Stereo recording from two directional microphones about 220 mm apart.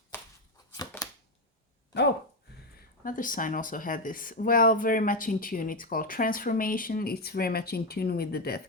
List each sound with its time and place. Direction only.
0.1 s chopping: 10° left (ahead or behind)
3.0 s speech: 35° left (ahead or behind)